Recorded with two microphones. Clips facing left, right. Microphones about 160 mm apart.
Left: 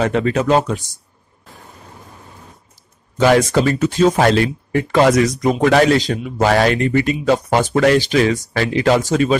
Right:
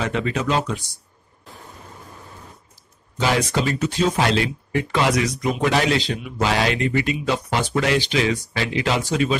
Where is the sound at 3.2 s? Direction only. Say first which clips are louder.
Left 8 dB; 50° left (ahead or behind).